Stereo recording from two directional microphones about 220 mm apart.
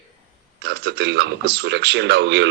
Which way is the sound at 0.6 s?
50° right (ahead or behind).